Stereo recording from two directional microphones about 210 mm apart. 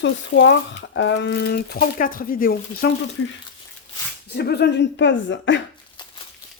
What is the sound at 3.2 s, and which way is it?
Speech, 70° left (ahead or behind).